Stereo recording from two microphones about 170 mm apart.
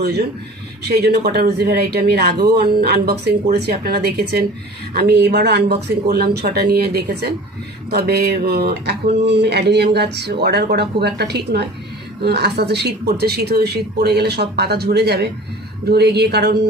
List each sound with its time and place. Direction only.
0.9 s speech: 70° right (ahead or behind)